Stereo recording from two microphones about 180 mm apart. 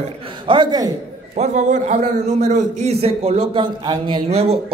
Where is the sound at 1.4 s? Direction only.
40° right (ahead or behind); by 4.2 s 25° right (ahead or behind).